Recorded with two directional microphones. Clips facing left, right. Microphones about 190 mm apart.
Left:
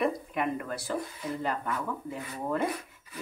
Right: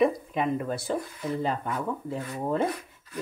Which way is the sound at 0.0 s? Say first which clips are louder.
Right 5 dB; 25° right (ahead or behind).